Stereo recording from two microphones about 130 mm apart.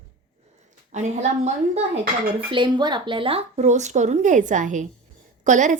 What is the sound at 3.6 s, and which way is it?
Speech, 65° right (ahead or behind).